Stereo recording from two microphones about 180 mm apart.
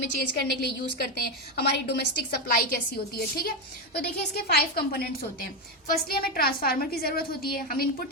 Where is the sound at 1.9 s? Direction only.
55° left (ahead or behind).